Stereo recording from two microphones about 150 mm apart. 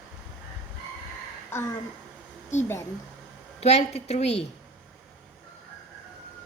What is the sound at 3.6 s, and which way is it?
Speech, 45° left (ahead or behind).